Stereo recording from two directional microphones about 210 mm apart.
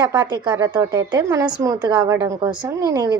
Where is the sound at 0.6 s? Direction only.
15° right (ahead or behind).